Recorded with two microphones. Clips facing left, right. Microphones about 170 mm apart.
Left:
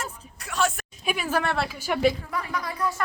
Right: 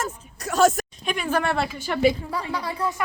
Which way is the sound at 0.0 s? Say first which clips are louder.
Right 6 dB; 40° right (ahead or behind).